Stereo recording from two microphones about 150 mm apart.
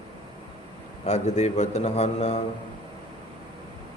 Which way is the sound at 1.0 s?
45° left (ahead or behind).